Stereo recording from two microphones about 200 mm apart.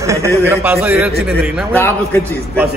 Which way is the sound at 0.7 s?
Centre (ahead or behind).